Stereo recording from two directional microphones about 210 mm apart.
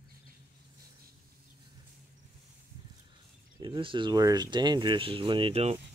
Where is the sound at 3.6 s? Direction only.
25° right (ahead or behind).